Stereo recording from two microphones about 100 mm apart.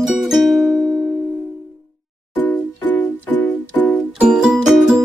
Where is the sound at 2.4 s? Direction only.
20° left (ahead or behind).